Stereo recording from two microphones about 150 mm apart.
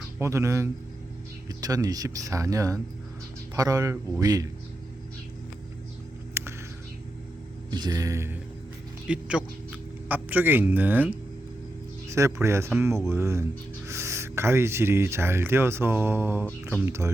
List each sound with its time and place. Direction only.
0.2 s speech: 20° right (ahead or behind)
6.4 s whispering: 15° right (ahead or behind)
7.7 s speech: 25° right (ahead or behind)
9.0 s a man's voice: 5° right (ahead or behind)